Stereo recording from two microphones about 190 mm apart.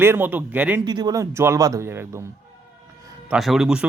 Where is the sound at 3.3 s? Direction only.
Centre (ahead or behind).